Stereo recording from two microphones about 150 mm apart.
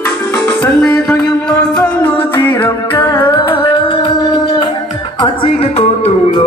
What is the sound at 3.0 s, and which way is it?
Music, 30° left (ahead or behind).